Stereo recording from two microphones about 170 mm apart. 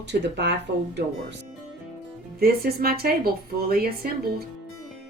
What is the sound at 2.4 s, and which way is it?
Speech, 65° right (ahead or behind).